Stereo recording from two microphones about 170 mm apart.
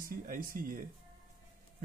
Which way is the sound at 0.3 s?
55° right (ahead or behind).